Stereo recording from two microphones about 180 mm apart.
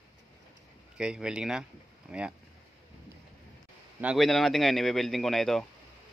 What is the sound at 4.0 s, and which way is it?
Speech, 5° right (ahead or behind).